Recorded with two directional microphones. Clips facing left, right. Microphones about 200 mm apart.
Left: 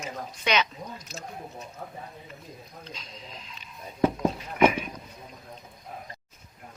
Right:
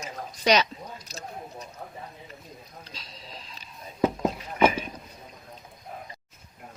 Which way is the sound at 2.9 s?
35° right (ahead or behind).